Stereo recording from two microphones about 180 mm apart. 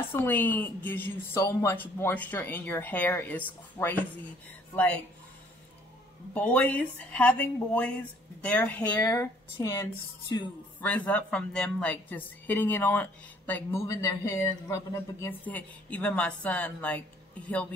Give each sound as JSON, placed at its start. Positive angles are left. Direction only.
{"t": 0.1, "sound": "a woman's voice", "side_deg": 10}
{"t": 6.3, "sound": "a woman's voice", "side_deg": 10}
{"t": 10.8, "sound": "a woman's voice", "side_deg": 10}